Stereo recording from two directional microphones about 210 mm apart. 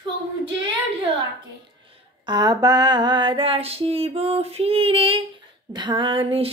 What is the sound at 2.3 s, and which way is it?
Female singing, 20° right (ahead or behind).